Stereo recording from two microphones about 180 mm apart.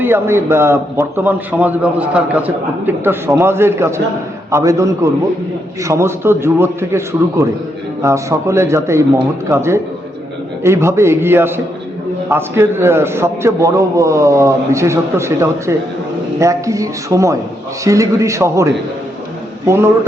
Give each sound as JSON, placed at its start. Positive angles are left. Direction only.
{"t": 0.0, "sound": "a man's voice", "side_deg": -15}